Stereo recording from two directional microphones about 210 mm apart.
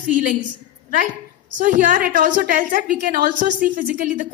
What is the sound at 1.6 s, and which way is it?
A woman's voice, 40° right (ahead or behind).